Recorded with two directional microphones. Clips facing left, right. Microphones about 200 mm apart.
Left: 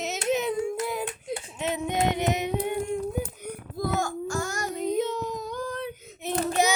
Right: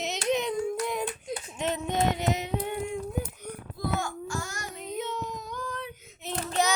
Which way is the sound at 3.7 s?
45° left (ahead or behind).